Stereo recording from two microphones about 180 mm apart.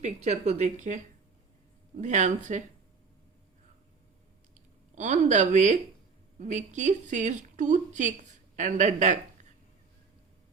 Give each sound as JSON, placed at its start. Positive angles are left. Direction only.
{"t": 0.0, "sound": "a woman's voice", "side_deg": -40}
{"t": 4.9, "sound": "a woman's voice", "side_deg": -45}